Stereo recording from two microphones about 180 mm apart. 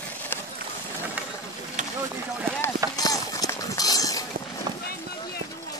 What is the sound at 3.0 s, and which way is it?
Run, 20° left (ahead or behind).